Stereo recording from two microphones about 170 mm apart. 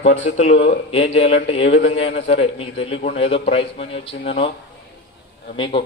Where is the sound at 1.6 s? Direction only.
90° left.